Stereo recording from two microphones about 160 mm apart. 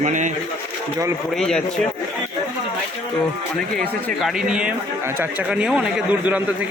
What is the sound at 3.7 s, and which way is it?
Speech, 10° left (ahead or behind).